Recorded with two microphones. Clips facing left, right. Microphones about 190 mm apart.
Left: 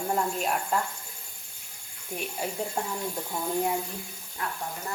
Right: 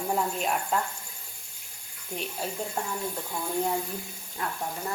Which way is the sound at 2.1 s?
10° left (ahead or behind).